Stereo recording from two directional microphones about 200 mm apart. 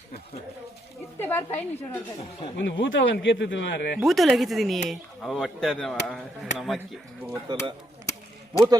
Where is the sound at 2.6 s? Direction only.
65° left (ahead or behind).